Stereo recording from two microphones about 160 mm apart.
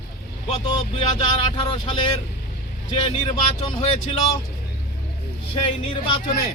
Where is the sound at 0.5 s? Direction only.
35° left (ahead or behind).